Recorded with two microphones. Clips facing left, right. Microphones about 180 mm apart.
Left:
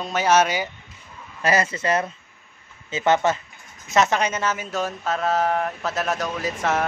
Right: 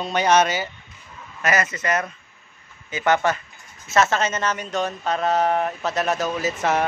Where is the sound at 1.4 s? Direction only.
30° left (ahead or behind); by 6.9 s centre (ahead or behind).